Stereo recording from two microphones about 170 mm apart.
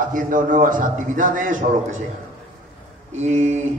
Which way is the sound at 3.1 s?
40° right (ahead or behind).